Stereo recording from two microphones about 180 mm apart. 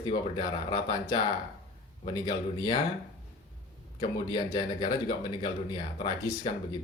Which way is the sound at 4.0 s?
25° left (ahead or behind).